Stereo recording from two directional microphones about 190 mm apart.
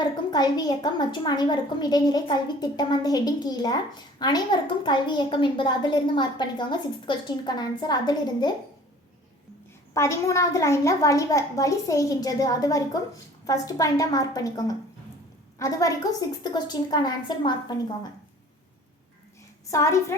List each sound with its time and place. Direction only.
0.3 s a child's voice: 20° left (ahead or behind)
9.9 s a woman's voice: 15° left (ahead or behind)
19.7 s a woman's voice: 15° left (ahead or behind)